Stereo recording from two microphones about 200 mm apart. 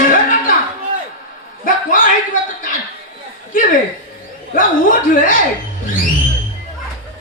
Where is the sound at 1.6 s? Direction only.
40° left (ahead or behind).